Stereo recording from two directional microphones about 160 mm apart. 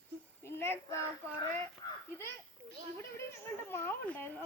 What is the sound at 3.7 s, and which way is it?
Speech, 15° left (ahead or behind).